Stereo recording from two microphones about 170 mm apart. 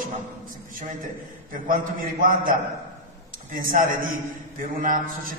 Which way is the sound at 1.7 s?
55° right (ahead or behind).